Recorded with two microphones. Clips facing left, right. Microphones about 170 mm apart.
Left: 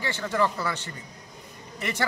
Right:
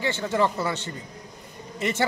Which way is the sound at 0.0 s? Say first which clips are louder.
Right 2 dB; 20° right (ahead or behind).